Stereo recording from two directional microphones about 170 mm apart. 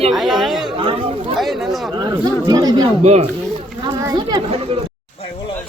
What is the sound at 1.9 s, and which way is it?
Speech, 25° right (ahead or behind).